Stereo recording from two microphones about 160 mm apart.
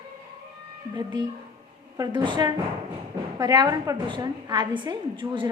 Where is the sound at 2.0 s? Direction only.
30° right (ahead or behind).